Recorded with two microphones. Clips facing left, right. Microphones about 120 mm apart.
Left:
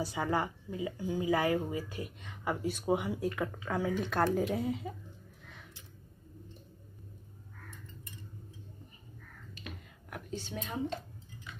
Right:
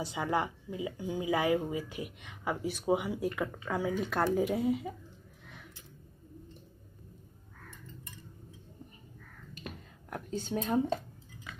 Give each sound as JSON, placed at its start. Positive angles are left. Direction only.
{"t": 0.0, "sound": "speech", "side_deg": -15}
{"t": 9.5, "sound": "whispering", "side_deg": -45}
{"t": 10.0, "sound": "a woman's voice", "side_deg": -40}